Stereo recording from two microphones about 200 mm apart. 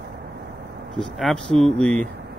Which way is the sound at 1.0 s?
Centre (ahead or behind).